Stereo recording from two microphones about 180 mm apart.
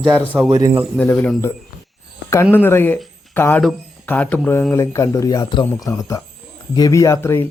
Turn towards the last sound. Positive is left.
turn(degrees=15)  # may be behind; listen again after turning